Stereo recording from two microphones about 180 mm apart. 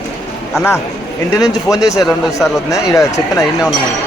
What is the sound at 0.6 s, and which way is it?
Speech, 15° left (ahead or behind).